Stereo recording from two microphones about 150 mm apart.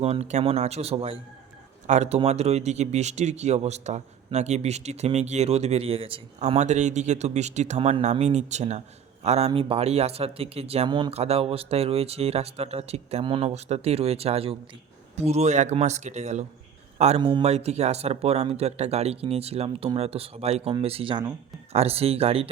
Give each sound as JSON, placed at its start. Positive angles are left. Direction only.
{"t": 0.0, "sound": "speech", "side_deg": -45}
{"t": 6.6, "sound": "speech", "side_deg": -50}
{"t": 11.1, "sound": "speech", "side_deg": -45}
{"t": 17.2, "sound": "speech", "side_deg": -30}
{"t": 17.4, "sound": "speech", "side_deg": -45}